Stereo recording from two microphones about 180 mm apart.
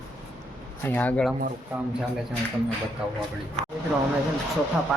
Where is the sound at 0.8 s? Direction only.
10° left (ahead or behind).